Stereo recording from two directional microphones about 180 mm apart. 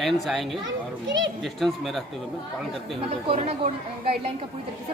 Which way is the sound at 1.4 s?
Centre (ahead or behind).